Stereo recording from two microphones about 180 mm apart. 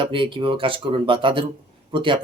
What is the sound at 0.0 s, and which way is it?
Speech, 30° right (ahead or behind).